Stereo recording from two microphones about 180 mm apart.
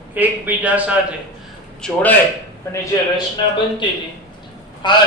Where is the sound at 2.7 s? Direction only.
20° left (ahead or behind).